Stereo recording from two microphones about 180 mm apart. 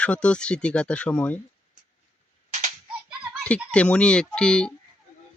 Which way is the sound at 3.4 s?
5° left (ahead or behind).